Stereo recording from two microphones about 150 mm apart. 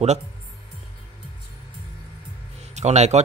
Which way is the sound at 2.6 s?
50° right (ahead or behind).